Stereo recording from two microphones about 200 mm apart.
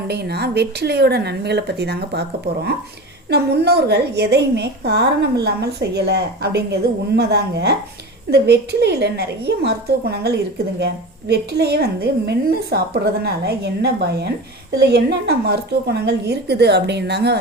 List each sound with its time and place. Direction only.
0.1 s a woman's voice: 55° right (ahead or behind)
3.2 s a woman's voice: 55° right (ahead or behind)